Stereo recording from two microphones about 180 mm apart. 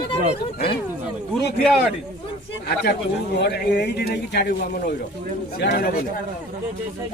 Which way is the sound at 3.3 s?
65° left (ahead or behind).